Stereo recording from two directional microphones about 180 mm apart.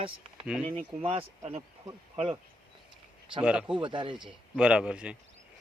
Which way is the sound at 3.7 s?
25° right (ahead or behind).